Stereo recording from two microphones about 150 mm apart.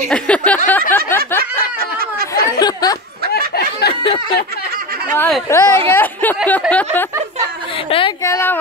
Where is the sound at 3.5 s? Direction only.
90° left.